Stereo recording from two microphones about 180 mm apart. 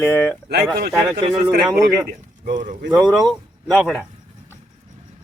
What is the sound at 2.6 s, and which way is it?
Speech, 45° right (ahead or behind).